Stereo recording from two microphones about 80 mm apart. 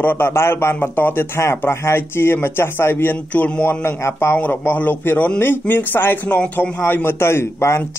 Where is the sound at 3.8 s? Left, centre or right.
Left.